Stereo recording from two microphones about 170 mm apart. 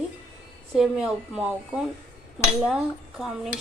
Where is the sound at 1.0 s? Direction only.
5° right (ahead or behind).